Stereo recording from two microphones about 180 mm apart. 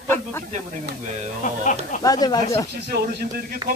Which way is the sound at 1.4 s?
45° left (ahead or behind).